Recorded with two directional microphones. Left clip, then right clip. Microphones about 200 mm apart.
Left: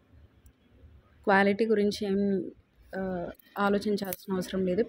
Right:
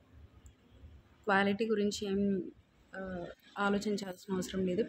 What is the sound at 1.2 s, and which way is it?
Speech, 25° left (ahead or behind).